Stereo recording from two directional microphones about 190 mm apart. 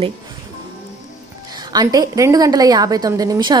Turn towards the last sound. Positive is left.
turn(degrees=-20)  # may be behind; listen again after turning